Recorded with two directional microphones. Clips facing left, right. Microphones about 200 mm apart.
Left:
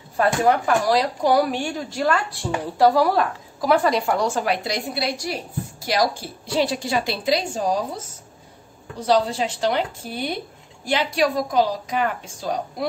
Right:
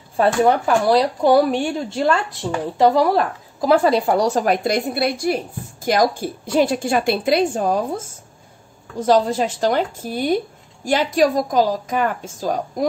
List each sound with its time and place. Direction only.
0.2 s a woman's voice: 30° right (ahead or behind); by 8.0 s 55° right (ahead or behind)
9.0 s a woman's voice: 50° right (ahead or behind)